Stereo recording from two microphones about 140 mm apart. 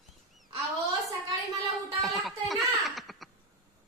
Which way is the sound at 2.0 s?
Centre (ahead or behind).